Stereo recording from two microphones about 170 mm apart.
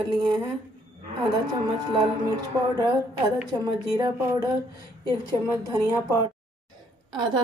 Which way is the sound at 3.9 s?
20° right (ahead or behind).